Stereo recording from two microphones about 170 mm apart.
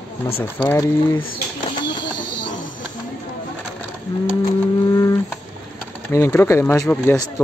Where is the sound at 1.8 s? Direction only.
25° left (ahead or behind).